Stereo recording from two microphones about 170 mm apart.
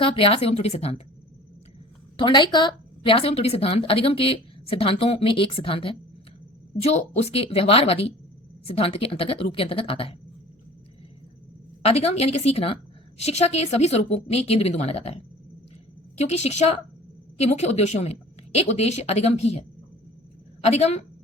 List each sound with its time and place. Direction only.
0.0 s a woman's voice: 35° left (ahead or behind)
2.1 s a woman's voice: 25° left (ahead or behind)
11.8 s a woman's voice: 35° left (ahead or behind)